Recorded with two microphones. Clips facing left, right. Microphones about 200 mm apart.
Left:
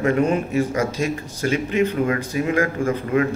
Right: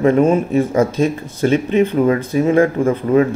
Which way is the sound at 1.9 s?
35° right (ahead or behind).